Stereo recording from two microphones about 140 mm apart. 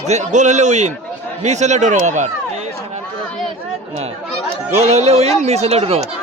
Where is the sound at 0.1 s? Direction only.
55° right (ahead or behind).